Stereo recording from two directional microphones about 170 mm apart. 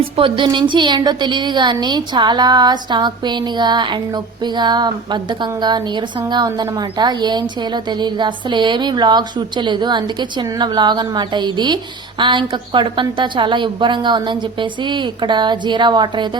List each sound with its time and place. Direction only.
0.2 s a woman's voice: 30° right (ahead or behind)